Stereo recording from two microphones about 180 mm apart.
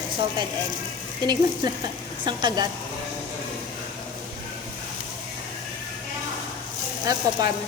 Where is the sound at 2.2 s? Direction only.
25° right (ahead or behind).